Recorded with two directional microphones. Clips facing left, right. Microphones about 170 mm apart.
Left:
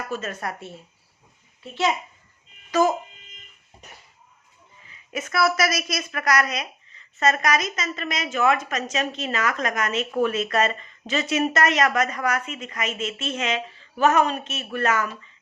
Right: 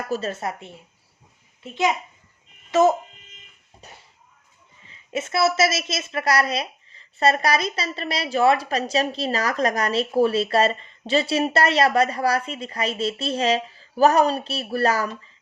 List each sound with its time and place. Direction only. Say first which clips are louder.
0.1 s a woman's voice: right 6 dB; 30° right (ahead or behind)
2.8 s a woman's voice: right 3 dB; 25° right (ahead or behind)
4.8 s a woman's voice: right 4 dB; 30° right (ahead or behind)